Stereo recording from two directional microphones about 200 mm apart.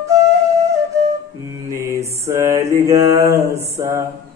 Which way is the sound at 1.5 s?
15° right (ahead or behind).